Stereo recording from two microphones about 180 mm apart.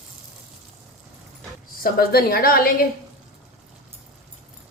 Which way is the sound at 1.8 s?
55° left (ahead or behind).